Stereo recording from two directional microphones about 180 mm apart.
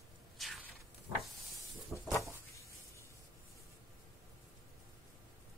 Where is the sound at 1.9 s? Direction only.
15° left (ahead or behind).